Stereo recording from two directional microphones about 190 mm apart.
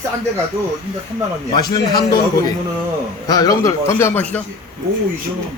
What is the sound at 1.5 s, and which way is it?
Speech, 20° left (ahead or behind).